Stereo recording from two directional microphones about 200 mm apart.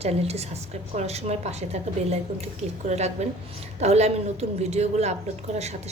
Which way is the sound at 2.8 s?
35° right (ahead or behind).